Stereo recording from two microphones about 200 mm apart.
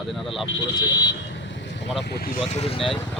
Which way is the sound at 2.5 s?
30° left (ahead or behind).